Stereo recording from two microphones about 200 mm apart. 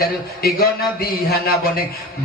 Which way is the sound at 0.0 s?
50° left (ahead or behind).